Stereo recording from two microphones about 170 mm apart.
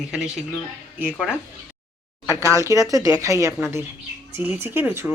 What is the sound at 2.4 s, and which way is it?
Speech, 15° right (ahead or behind).